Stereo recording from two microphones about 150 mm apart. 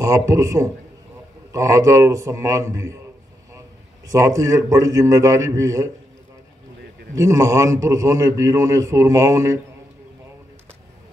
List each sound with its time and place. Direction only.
0.3 s a man's voice: 20° right (ahead or behind)
4.1 s a man's voice: 20° right (ahead or behind)
7.2 s a man's voice: 20° right (ahead or behind)